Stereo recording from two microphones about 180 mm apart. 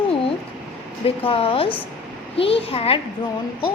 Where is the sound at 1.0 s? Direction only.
30° left (ahead or behind).